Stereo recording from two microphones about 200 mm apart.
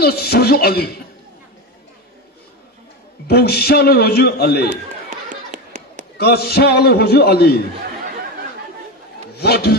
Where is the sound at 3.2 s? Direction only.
55° left (ahead or behind).